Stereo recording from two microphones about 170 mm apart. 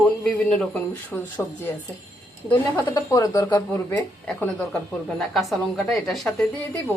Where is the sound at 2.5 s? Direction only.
15° left (ahead or behind).